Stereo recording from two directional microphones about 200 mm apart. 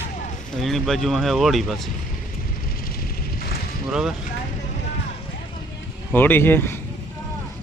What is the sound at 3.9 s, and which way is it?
Speech, 5° right (ahead or behind).